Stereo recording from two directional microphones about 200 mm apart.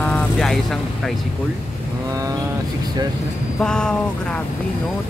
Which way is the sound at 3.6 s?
5° left (ahead or behind).